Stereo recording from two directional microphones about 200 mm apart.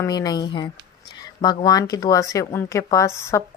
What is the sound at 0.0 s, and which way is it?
A woman's voice, 20° left (ahead or behind).